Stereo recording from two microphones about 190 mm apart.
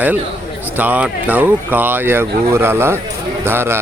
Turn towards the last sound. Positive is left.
turn(degrees=-10)  # may be behind; listen again after turning